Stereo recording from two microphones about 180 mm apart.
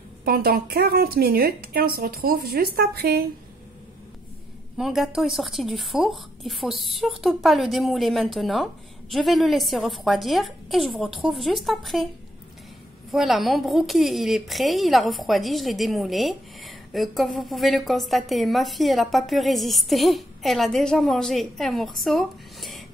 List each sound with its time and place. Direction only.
0.2 s a woman's voice: 55° right (ahead or behind)
4.7 s a woman's voice: centre (ahead or behind)
13.1 s a woman's voice: centre (ahead or behind)